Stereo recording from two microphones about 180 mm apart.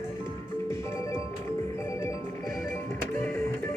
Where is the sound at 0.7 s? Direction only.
15° left (ahead or behind).